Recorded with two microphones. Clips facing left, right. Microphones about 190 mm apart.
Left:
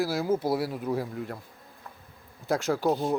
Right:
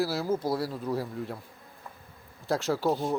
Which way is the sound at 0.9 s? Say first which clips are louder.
Left 1 dB; centre (ahead or behind).